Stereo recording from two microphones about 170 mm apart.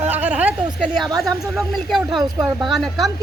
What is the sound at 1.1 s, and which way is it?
Speech, 20° right (ahead or behind).